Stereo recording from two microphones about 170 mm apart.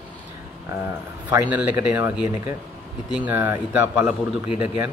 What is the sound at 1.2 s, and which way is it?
Speech, 10° right (ahead or behind).